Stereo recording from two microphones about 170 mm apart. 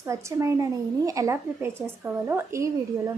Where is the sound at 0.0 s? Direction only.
15° right (ahead or behind).